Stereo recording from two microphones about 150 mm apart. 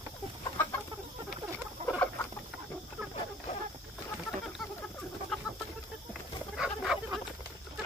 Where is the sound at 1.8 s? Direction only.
45° right (ahead or behind).